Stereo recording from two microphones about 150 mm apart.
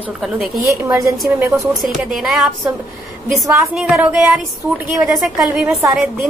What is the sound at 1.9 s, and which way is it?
Speech, 5° right (ahead or behind).